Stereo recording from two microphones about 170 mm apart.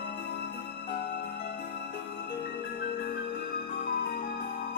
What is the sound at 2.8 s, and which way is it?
Music, 60° left (ahead or behind).